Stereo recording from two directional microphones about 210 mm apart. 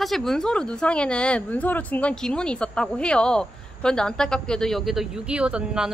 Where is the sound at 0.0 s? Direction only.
Centre (ahead or behind).